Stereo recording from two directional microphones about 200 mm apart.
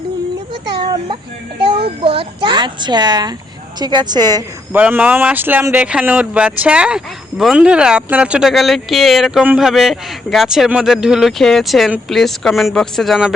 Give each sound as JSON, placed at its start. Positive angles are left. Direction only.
{"t": 0.8, "sound": "a sound", "side_deg": -25}
{"t": 2.0, "sound": "a child's voice", "side_deg": -30}
{"t": 4.8, "sound": "speech", "side_deg": -10}